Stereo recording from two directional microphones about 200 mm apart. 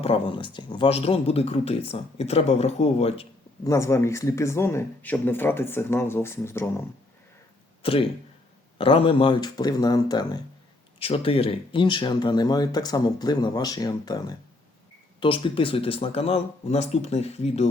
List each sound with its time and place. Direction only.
0.0 s speech: 25° left (ahead or behind)
3.6 s speech: 15° left (ahead or behind)
7.8 s speech: 25° left (ahead or behind)